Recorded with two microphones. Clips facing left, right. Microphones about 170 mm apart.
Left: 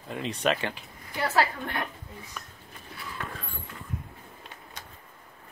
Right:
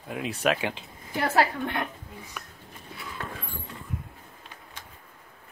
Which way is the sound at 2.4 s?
10° right (ahead or behind).